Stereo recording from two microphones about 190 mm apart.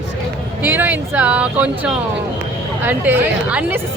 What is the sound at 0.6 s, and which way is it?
A woman's voice, 10° right (ahead or behind).